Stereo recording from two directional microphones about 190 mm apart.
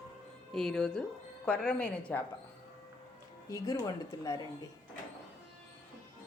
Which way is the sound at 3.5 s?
20° left (ahead or behind).